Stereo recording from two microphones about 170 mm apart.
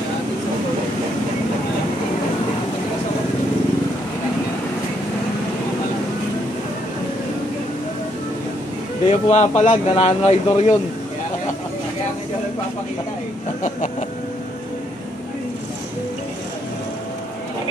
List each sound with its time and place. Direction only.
9.0 s speech: 40° left (ahead or behind)
13.6 s speech: 50° left (ahead or behind)